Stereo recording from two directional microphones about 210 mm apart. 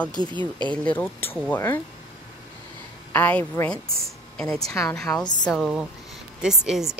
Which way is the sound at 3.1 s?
10° left (ahead or behind).